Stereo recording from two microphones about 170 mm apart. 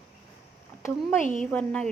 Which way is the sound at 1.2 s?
50° left (ahead or behind).